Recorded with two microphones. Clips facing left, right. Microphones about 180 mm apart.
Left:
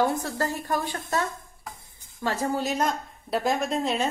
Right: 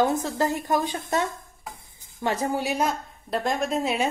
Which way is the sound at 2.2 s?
15° right (ahead or behind).